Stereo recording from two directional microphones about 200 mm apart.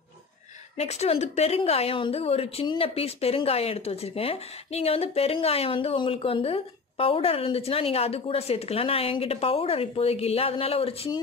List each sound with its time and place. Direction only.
0.7 s a woman's voice: 30° left (ahead or behind)